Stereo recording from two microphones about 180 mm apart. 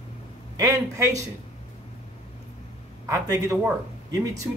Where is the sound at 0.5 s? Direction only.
20° right (ahead or behind).